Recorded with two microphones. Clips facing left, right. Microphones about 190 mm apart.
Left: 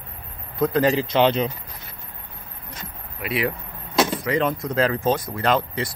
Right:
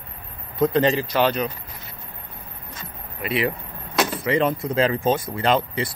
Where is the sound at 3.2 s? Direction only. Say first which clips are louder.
Right 1 dB; centre (ahead or behind).